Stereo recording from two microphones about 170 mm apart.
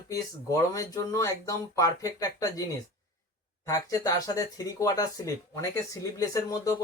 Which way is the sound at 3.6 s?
20° left (ahead or behind).